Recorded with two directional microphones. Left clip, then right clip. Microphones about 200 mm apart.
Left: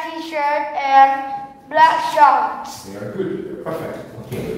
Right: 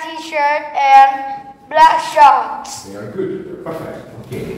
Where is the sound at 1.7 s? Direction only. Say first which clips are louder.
Right 3 dB; 30° right (ahead or behind).